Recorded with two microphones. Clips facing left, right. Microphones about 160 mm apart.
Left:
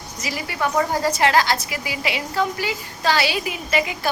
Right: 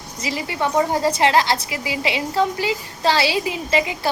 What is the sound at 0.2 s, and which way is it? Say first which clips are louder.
A woman's voice: right 2 dB; 25° right (ahead or behind).